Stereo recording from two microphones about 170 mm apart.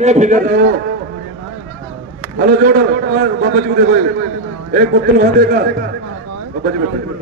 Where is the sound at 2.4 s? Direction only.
65° right (ahead or behind).